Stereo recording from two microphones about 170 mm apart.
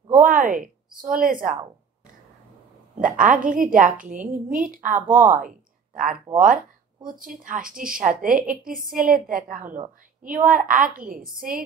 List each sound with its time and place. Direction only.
0.1 s a sound: 50° right (ahead or behind)
1.1 s a woman's voice: 55° right (ahead or behind)
3.0 s a woman's voice: 50° right (ahead or behind)
5.1 s speech: 10° right (ahead or behind)
6.3 s a woman's voice: 50° right (ahead or behind)